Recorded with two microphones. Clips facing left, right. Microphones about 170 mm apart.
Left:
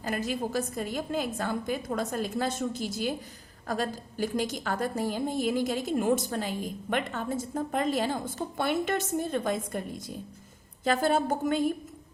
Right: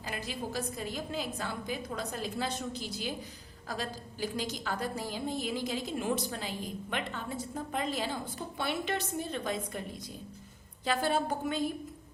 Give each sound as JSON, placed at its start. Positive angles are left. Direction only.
{"t": 0.0, "sound": "a woman's voice", "side_deg": 45}